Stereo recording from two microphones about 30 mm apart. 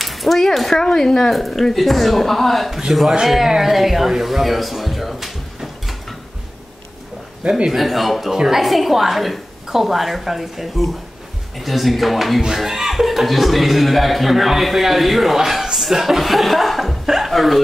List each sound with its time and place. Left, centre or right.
0.0 s a sound: centre
0.7 s speech: centre
2.9 s a woman's voice: centre
3.5 s a sound: centre
7.4 s a man's voice: right
7.7 s a woman's voice: centre
17.0 s chuckle: centre
17.3 s speech: centre